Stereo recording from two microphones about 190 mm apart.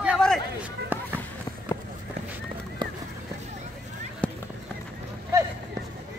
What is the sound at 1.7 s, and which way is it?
Run, 20° left (ahead or behind).